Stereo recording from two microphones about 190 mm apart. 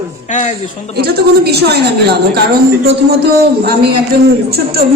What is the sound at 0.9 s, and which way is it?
Speech, 55° right (ahead or behind).